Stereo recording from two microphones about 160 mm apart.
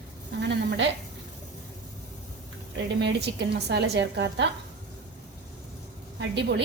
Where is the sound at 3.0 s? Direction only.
90° right.